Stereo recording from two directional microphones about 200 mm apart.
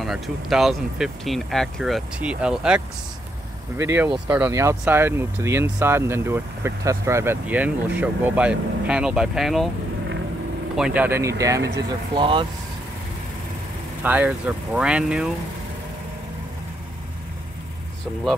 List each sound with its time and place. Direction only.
0.0 s speech: centre (ahead or behind)
10.8 s speech: 5° right (ahead or behind); by 12.4 s 25° right (ahead or behind)
14.0 s speech: 5° right (ahead or behind)